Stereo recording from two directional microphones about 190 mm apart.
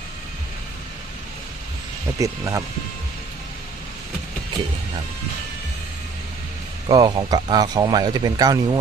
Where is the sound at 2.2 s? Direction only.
15° right (ahead or behind).